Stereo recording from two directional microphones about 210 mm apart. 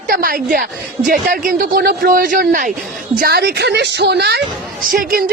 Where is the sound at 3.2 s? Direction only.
50° right (ahead or behind).